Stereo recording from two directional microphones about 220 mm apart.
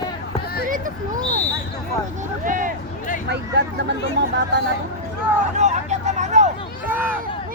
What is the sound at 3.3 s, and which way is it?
Vehicle, 50° right (ahead or behind).